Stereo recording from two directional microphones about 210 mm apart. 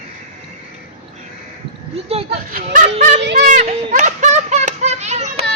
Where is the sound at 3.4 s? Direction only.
35° right (ahead or behind).